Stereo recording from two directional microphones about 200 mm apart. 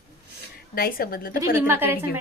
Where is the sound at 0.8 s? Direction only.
50° left (ahead or behind).